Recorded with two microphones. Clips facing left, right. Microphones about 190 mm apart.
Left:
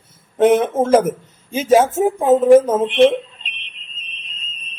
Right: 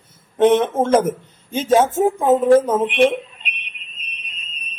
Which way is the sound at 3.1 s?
15° right (ahead or behind).